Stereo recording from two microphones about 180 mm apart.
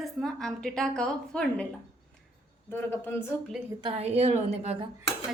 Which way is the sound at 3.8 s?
30° right (ahead or behind).